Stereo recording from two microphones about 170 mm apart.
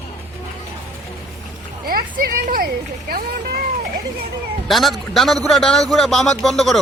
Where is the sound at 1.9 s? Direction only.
60° right (ahead or behind).